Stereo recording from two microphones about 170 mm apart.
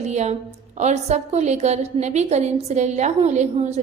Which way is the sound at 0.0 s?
40° right (ahead or behind).